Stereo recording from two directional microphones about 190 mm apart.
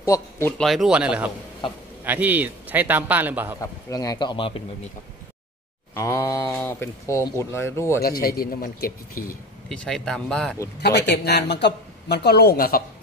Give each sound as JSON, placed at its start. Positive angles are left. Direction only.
{"t": 0.0, "sound": "a man's voice", "side_deg": 15}
{"t": 3.9, "sound": "speech", "side_deg": 20}
{"t": 5.9, "sound": "speech", "side_deg": 15}
{"t": 8.0, "sound": "a man's voice", "side_deg": 55}
{"t": 9.7, "sound": "a man's voice", "side_deg": 5}
{"t": 11.1, "sound": "speech", "side_deg": 60}